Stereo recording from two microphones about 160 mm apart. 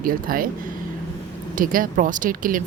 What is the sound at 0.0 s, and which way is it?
Speech, 65° right (ahead or behind).